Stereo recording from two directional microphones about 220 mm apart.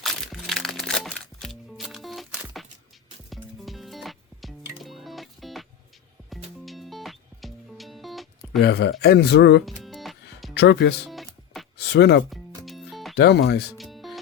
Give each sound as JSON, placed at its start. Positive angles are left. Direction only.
{"t": 0.0, "sound": "music", "side_deg": 0}
{"t": 8.6, "sound": "speech", "side_deg": 50}
{"t": 9.8, "sound": "music", "side_deg": 0}
{"t": 10.6, "sound": "speech", "side_deg": 50}
{"t": 11.1, "sound": "music", "side_deg": 0}
{"t": 11.8, "sound": "speech", "side_deg": 50}
{"t": 12.3, "sound": "music", "side_deg": 0}
{"t": 13.1, "sound": "speech", "side_deg": 50}
{"t": 13.7, "sound": "music", "side_deg": 0}